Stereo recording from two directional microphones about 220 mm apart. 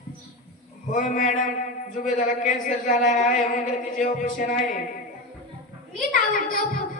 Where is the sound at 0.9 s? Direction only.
35° left (ahead or behind).